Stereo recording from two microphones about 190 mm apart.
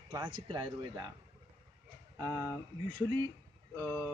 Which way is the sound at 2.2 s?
15° right (ahead or behind).